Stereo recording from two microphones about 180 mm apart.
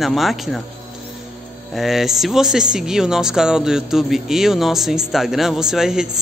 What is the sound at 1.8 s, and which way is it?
Speech, centre (ahead or behind).